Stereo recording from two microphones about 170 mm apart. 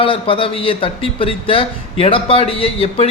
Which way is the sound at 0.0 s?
30° left (ahead or behind).